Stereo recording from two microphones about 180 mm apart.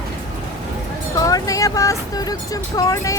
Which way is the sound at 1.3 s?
20° left (ahead or behind).